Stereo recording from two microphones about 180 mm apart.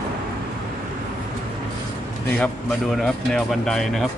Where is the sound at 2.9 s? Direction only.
Centre (ahead or behind).